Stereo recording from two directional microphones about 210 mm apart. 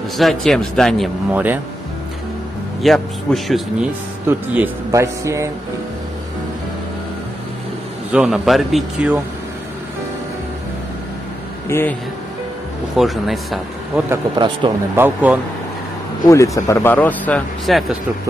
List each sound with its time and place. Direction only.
0.2 s speech: centre (ahead or behind)
2.8 s speech: centre (ahead or behind)
4.3 s speech: 10° right (ahead or behind)
8.1 s speech: 5° right (ahead or behind)
11.7 s speech: 10° left (ahead or behind)
12.9 s speech: centre (ahead or behind)
14.0 s speech: 20° right (ahead or behind)
15.0 s speech: 10° right (ahead or behind)
16.3 s speech: 15° left (ahead or behind)